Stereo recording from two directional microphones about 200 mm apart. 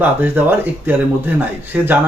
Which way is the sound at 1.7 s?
10° right (ahead or behind).